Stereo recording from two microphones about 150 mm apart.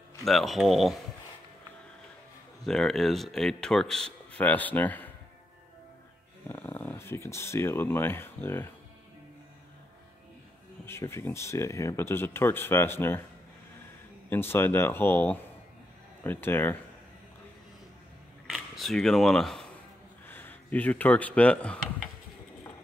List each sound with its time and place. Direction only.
0.2 s speech: centre (ahead or behind)
2.6 s speech: 5° left (ahead or behind)
6.5 s speech: 15° left (ahead or behind)
10.9 s speech: 15° left (ahead or behind)
14.3 s speech: 15° left (ahead or behind)
18.5 s speech: centre (ahead or behind)
20.2 s speech: 15° left (ahead or behind)